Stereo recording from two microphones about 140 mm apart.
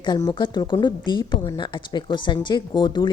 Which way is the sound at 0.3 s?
35° left (ahead or behind).